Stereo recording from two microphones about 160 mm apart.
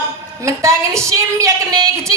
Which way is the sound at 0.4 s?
20° right (ahead or behind).